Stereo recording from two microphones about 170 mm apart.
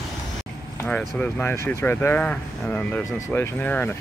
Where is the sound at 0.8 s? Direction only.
10° left (ahead or behind).